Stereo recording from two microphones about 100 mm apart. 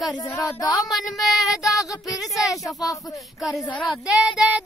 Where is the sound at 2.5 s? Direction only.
35° left (ahead or behind).